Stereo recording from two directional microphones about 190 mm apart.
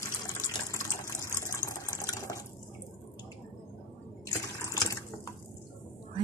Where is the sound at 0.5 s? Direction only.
15° left (ahead or behind).